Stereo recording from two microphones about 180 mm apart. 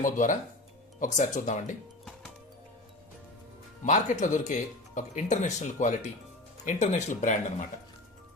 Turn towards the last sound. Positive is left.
turn(degrees=45)  # may be behind; listen again after turning